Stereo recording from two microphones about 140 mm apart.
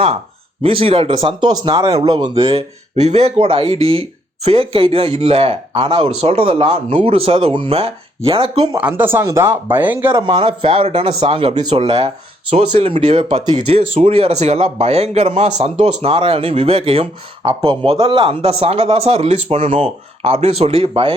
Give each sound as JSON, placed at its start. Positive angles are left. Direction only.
{"t": 0.6, "sound": "a man's voice", "side_deg": -40}
{"t": 8.8, "sound": "speech", "side_deg": -10}
{"t": 10.2, "sound": "speech", "side_deg": -35}
{"t": 13.7, "sound": "a man's voice", "side_deg": -45}